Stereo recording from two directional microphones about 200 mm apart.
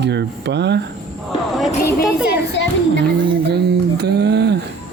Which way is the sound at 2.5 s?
65° left (ahead or behind).